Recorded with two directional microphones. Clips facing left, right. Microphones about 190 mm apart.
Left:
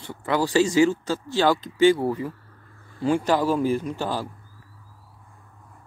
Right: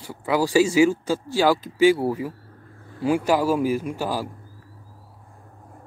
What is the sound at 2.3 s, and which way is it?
Vehicle, 40° right (ahead or behind).